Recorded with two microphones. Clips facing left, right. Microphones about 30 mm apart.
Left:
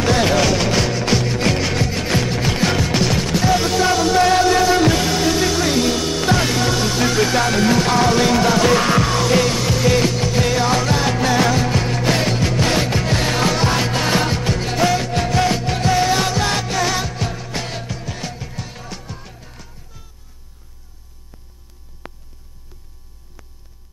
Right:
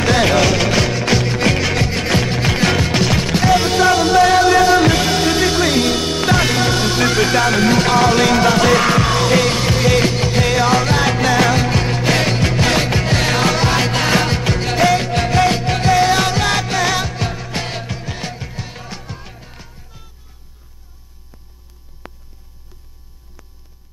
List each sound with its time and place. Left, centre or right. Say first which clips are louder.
0.0 s music: right 2 dB; right
0.4 s music: right 2 dB; centre
1.2 s music: right 2 dB; right